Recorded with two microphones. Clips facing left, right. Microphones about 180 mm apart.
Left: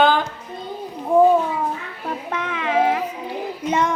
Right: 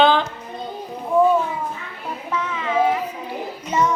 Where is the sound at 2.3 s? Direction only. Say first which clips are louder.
Right 1 dB; 60° left (ahead or behind).